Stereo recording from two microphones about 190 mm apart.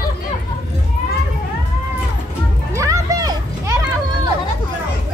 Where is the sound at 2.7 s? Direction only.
15° right (ahead or behind).